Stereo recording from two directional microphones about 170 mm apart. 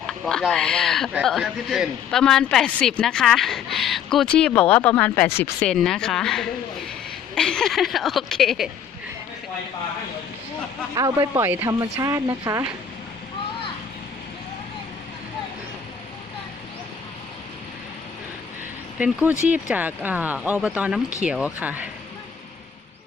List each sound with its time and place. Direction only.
0.1 s a woman's voice: 5° left (ahead or behind)
10.9 s speech: 20° right (ahead or behind)
18.9 s speech: 5° right (ahead or behind)